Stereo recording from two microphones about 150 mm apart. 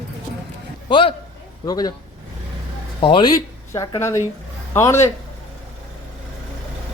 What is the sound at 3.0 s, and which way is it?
A man's voice, 35° left (ahead or behind).